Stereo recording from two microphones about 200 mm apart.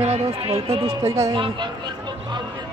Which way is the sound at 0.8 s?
15° right (ahead or behind).